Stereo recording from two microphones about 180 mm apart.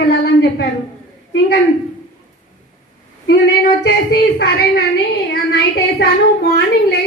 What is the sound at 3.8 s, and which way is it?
A woman's voice, 65° left (ahead or behind).